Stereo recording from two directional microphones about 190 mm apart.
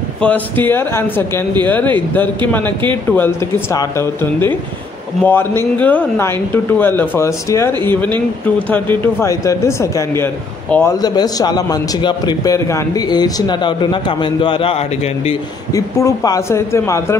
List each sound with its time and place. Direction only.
0.2 s speech: 10° left (ahead or behind); by 15.3 s 30° left (ahead or behind)
15.7 s speech: 15° left (ahead or behind)